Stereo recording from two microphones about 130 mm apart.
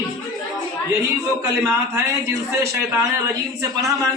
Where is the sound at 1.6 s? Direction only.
20° right (ahead or behind).